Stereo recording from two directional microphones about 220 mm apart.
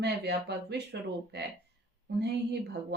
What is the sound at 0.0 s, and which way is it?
Speech, 50° right (ahead or behind).